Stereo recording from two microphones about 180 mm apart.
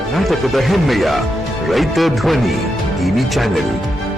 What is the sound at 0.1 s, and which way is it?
Speech, centre (ahead or behind).